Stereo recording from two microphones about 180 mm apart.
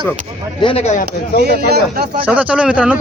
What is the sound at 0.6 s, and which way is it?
Speech, 30° left (ahead or behind).